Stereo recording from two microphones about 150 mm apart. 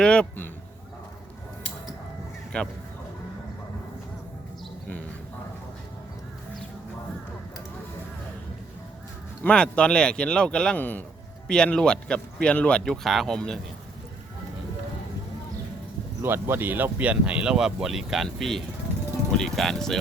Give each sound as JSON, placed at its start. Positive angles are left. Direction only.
{"t": 0.0, "sound": "speech", "side_deg": 5}
{"t": 2.5, "sound": "speech", "side_deg": 5}
{"t": 9.4, "sound": "speech", "side_deg": 5}
{"t": 16.2, "sound": "speech", "side_deg": -15}